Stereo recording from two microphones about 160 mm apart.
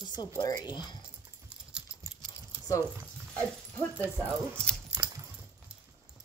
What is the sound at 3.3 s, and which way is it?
Speech, 10° left (ahead or behind).